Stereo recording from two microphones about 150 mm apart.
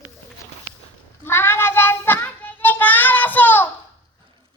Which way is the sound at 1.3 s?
15° left (ahead or behind).